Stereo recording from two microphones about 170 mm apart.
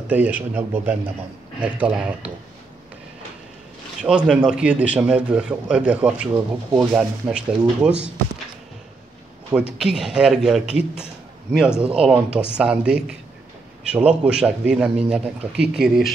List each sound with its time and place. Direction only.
0.1 s a man's voice: 10° right (ahead or behind)
4.0 s a man's voice: 5° right (ahead or behind)
6.7 s speech: 20° right (ahead or behind)
7.0 s a man's voice: 5° right (ahead or behind)
9.6 s a man's voice: 5° right (ahead or behind)